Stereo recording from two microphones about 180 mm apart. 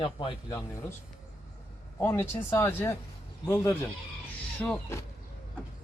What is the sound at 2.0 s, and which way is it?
Speech, 10° left (ahead or behind).